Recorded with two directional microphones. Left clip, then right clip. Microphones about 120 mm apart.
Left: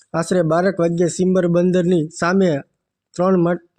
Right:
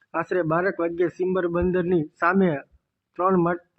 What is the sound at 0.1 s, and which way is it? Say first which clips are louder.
Speech: left 6 dB; 35° left (ahead or behind).